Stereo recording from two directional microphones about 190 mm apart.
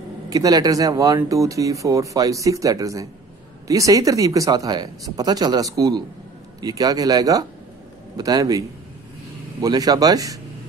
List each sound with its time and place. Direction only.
0.3 s speech: 20° right (ahead or behind)